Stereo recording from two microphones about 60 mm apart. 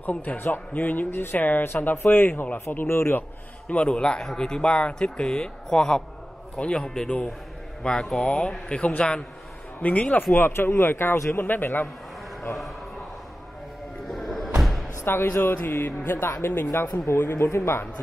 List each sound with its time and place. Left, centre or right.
0.0 s speech: left
3.6 s speech: centre
10.3 s speech: left
11.3 s speech: left
14.0 s music: centre
14.6 s a sound: centre
15.3 s speech: left